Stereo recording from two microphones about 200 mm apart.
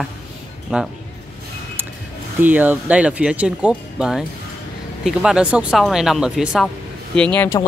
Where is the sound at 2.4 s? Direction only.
10° right (ahead or behind).